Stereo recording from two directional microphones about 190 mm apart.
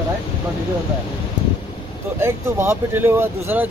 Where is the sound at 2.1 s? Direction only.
15° right (ahead or behind).